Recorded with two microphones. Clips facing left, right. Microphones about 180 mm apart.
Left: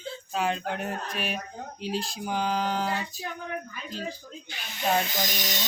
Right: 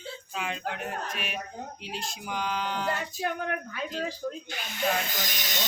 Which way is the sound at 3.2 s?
65° right (ahead or behind).